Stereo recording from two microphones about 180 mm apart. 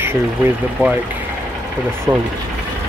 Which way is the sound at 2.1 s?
20° right (ahead or behind).